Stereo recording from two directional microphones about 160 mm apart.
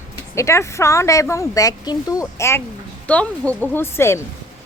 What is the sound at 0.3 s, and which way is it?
Speech, 20° left (ahead or behind).